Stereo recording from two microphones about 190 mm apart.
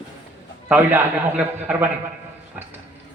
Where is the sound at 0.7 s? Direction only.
10° right (ahead or behind).